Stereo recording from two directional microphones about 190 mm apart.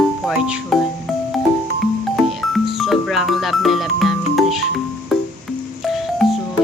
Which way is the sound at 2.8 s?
Centre (ahead or behind).